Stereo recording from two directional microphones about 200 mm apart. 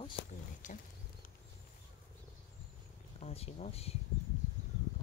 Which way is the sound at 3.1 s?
30° left (ahead or behind).